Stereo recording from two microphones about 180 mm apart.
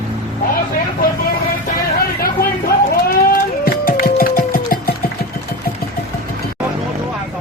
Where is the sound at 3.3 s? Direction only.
55° left (ahead or behind).